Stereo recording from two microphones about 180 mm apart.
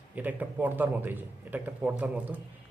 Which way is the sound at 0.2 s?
10° right (ahead or behind).